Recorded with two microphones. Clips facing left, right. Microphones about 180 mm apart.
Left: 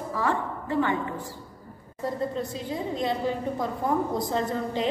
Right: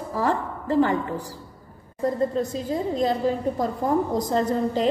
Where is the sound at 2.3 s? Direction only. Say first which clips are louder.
Right 5 dB; 40° right (ahead or behind).